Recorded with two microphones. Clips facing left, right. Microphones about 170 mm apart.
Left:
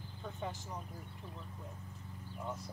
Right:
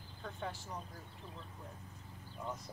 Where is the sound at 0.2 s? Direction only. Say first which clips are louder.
Left 1 dB; 15° left (ahead or behind).